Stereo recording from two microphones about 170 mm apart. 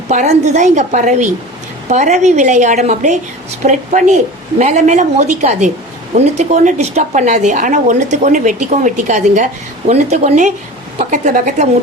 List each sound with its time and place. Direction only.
0.1 s speech: 45° right (ahead or behind)